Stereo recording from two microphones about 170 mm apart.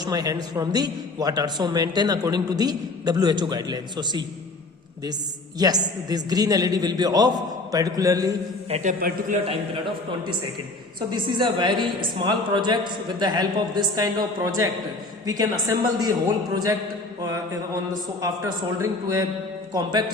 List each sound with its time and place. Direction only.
0.0 s a man's voice: 20° right (ahead or behind)
5.5 s a man's voice: 20° right (ahead or behind)
8.7 s a man's voice: 45° right (ahead or behind)
11.3 s a man's voice: 30° right (ahead or behind)
19.7 s a man's voice: 25° right (ahead or behind)